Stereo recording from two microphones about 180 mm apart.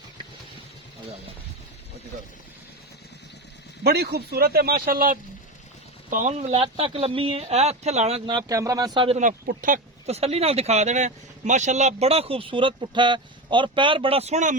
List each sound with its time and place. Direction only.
3.8 s speech: 65° right (ahead or behind); by 8.2 s 35° right (ahead or behind)
8.3 s speech: 20° right (ahead or behind)
9.5 s speech: 50° right (ahead or behind)